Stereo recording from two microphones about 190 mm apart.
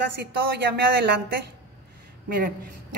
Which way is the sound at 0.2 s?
65° right (ahead or behind).